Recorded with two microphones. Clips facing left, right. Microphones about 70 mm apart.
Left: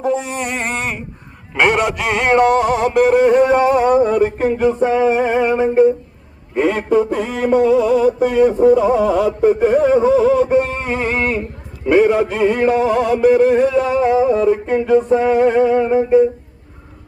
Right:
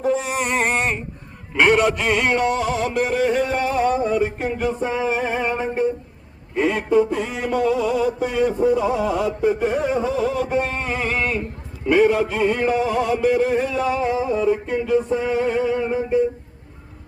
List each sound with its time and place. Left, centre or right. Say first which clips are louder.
0.1 s music: left 1 dB; centre
1.5 s music: left 1 dB; left
6.6 s a man's voice: left 3 dB; left
7.3 s music: left 7 dB; left